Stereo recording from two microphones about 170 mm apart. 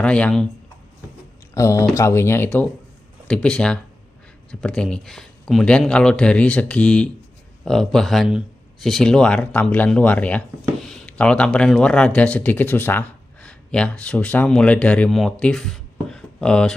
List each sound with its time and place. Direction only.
0.0 s speech: 5° left (ahead or behind)
1.5 s speech: 20° left (ahead or behind)